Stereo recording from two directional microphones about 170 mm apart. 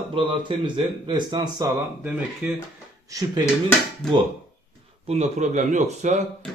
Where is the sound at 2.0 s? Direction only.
5° right (ahead or behind).